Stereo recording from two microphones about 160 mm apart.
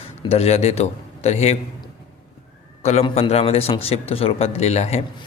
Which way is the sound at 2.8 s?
45° left (ahead or behind).